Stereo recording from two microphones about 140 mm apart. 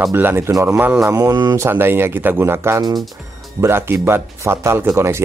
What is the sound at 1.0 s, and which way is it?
Speech, 25° right (ahead or behind).